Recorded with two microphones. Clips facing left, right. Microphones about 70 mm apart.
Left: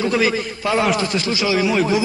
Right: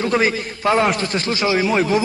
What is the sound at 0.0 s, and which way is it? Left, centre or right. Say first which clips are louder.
A man's voice: even; right.